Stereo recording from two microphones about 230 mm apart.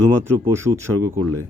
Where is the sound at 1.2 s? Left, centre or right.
Right.